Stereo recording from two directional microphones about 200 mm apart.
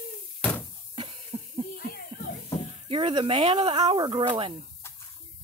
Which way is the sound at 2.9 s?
25° right (ahead or behind).